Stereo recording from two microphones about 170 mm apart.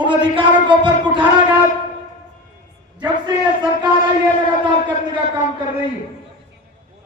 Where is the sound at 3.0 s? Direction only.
25° right (ahead or behind).